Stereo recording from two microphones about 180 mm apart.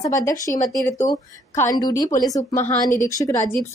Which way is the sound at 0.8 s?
20° left (ahead or behind).